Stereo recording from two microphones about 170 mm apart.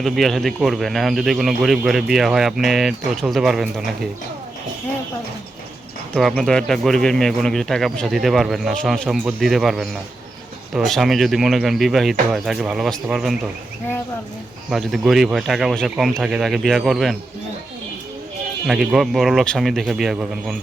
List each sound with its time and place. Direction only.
0.0 s speech: centre (ahead or behind)
6.1 s speech: centre (ahead or behind)
14.7 s speech: centre (ahead or behind)
18.7 s speech: 5° right (ahead or behind)